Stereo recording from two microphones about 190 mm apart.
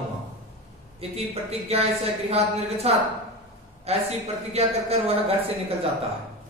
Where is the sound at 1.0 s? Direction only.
30° right (ahead or behind).